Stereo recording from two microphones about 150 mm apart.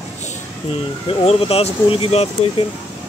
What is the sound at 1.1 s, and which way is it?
Speech, 40° left (ahead or behind).